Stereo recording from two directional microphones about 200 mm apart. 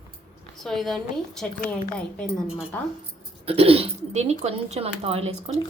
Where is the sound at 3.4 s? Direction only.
30° right (ahead or behind).